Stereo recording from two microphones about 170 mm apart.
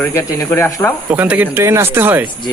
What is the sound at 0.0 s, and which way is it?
Speech, 15° left (ahead or behind).